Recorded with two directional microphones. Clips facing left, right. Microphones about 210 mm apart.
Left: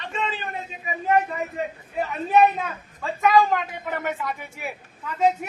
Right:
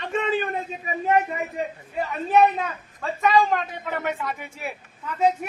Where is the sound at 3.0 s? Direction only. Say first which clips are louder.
Left 1 dB; centre (ahead or behind).